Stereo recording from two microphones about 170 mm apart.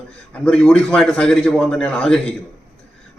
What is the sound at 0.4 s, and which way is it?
A man's voice, 5° left (ahead or behind).